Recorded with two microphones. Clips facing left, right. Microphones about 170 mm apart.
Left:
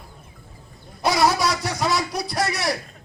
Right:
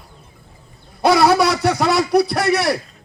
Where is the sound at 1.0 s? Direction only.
60° right (ahead or behind).